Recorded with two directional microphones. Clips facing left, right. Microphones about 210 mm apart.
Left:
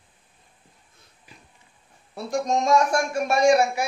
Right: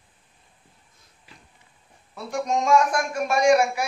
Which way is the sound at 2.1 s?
35° left (ahead or behind).